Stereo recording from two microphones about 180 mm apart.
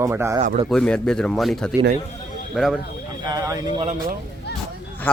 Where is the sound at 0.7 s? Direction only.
5° left (ahead or behind).